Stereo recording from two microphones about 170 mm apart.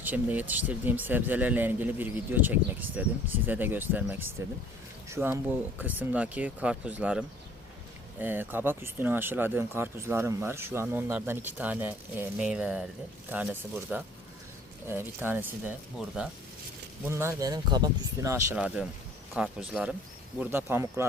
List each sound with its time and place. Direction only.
0.0 s speech: 10° right (ahead or behind)
18.5 s speech: 5° right (ahead or behind)